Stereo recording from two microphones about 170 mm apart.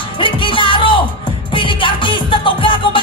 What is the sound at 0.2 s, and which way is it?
Music, 30° left (ahead or behind).